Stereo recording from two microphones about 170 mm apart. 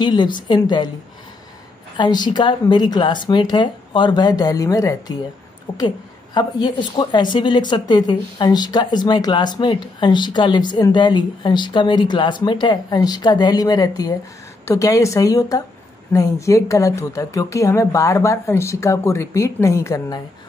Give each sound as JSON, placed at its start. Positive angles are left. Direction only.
{"t": 0.0, "sound": "a woman's voice", "side_deg": 25}
{"t": 2.0, "sound": "a woman's voice", "side_deg": 25}